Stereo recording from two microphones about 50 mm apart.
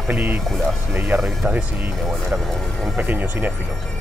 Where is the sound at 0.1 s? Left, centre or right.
Right.